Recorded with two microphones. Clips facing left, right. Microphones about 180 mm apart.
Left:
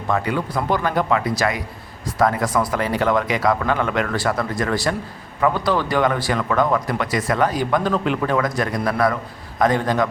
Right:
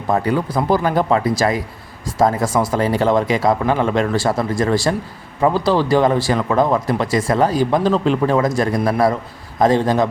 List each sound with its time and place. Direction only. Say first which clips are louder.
0.1 s speech: right 4 dB; 35° right (ahead or behind)